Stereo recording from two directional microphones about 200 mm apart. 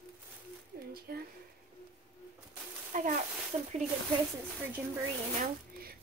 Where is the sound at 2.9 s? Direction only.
40° right (ahead or behind).